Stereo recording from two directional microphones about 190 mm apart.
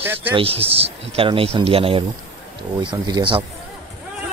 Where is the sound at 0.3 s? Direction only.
30° right (ahead or behind).